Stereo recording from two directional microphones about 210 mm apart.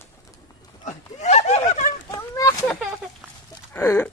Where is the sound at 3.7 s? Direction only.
10° left (ahead or behind).